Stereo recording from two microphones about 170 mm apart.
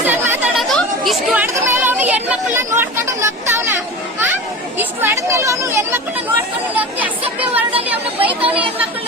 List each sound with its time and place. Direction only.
0.1 s chatter: 10° right (ahead or behind)
1.5 s a sound: 10° right (ahead or behind)
4.8 s speech: 15° right (ahead or behind)
8.2 s chatter: 30° right (ahead or behind)